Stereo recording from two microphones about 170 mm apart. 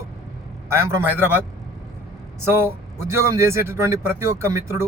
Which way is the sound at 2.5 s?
15° right (ahead or behind).